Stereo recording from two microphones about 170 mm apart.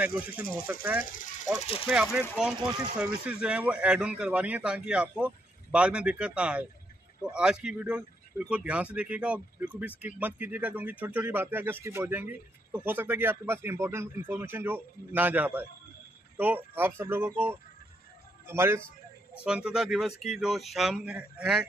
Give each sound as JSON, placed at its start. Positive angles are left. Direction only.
{"t": 0.0, "sound": "speech", "side_deg": -10}
{"t": 1.0, "sound": "speech", "side_deg": 50}
{"t": 2.1, "sound": "speech", "side_deg": -5}